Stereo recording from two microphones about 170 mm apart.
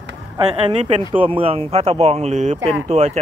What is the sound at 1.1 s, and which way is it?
A man's voice, 30° right (ahead or behind).